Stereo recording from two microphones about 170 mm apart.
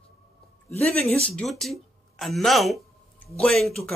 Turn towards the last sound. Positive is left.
turn(degrees=0)  # may be behind; listen again after turning